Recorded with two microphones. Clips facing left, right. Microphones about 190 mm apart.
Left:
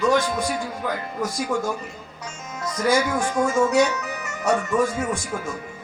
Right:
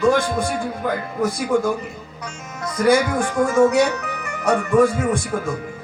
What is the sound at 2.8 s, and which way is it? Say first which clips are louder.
Speech: right 4 dB; 55° right (ahead or behind).